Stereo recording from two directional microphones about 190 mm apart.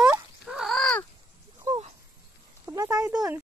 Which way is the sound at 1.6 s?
30° right (ahead or behind).